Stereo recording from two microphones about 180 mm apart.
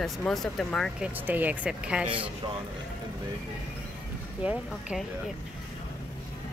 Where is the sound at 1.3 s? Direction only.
10° right (ahead or behind).